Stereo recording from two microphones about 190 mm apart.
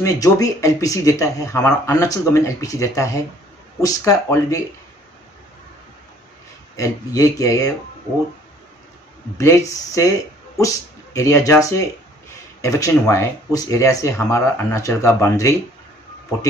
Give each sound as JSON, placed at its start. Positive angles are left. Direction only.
{"t": 0.0, "sound": "speech", "side_deg": 15}
{"t": 6.8, "sound": "speech", "side_deg": 15}
{"t": 9.4, "sound": "speech", "side_deg": 15}
{"t": 11.1, "sound": "speech", "side_deg": 15}